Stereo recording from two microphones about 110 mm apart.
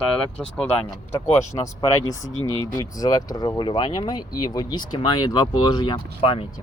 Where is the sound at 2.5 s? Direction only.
35° left (ahead or behind).